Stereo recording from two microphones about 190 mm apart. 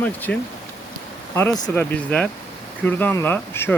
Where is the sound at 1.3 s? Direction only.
10° left (ahead or behind).